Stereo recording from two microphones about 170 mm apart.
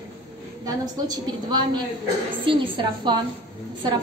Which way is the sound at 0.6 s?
25° right (ahead or behind).